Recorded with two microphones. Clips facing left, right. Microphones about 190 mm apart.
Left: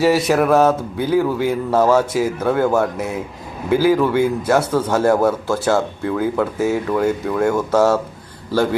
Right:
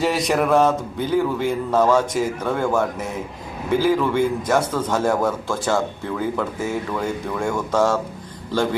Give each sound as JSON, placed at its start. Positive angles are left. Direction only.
{"t": 0.0, "sound": "a man's voice", "side_deg": 5}